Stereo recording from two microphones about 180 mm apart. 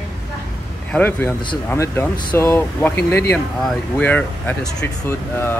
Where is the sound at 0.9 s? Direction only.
10° left (ahead or behind).